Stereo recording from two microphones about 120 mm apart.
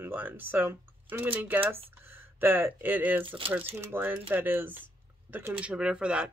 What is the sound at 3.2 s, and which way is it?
Speech, 45° right (ahead or behind).